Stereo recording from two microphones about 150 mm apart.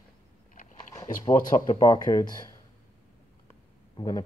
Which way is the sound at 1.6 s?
25° left (ahead or behind).